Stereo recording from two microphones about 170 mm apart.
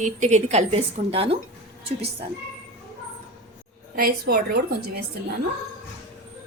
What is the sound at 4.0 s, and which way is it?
A woman's voice, 60° right (ahead or behind).